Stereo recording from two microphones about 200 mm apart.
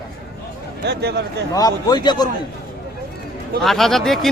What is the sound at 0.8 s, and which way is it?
Speech, 55° right (ahead or behind).